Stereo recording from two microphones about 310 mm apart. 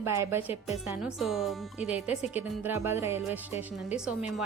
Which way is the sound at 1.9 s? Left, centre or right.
Left.